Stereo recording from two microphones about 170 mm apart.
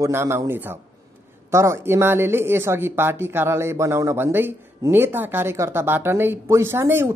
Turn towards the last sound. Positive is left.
turn(degrees=-15)  # may be behind; listen again after turning